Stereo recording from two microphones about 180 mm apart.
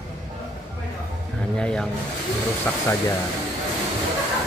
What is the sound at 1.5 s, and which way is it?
Speech, 5° left (ahead or behind).